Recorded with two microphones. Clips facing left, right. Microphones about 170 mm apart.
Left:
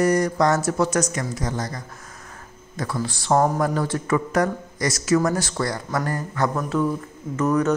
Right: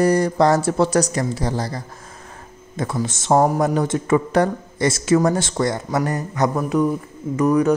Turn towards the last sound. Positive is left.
turn(degrees=-10)  # may be behind; listen again after turning